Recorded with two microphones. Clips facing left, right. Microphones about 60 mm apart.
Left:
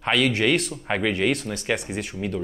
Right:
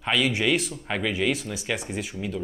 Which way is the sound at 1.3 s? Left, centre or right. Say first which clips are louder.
Left 3 dB; centre.